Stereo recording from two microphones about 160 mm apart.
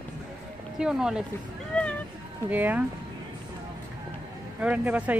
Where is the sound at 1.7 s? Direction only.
5° left (ahead or behind).